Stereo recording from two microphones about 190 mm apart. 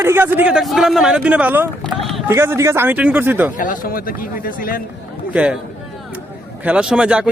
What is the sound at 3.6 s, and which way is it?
Speech, 45° left (ahead or behind).